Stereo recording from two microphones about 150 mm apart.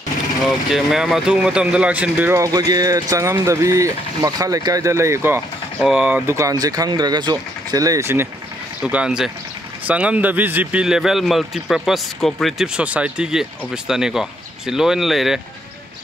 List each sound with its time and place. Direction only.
0.5 s speech: centre (ahead or behind); by 8.3 s 15° right (ahead or behind)
8.8 s a man's voice: 5° right (ahead or behind)